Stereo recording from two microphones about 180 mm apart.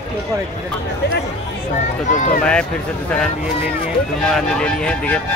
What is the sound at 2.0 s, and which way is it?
Speech, 45° left (ahead or behind).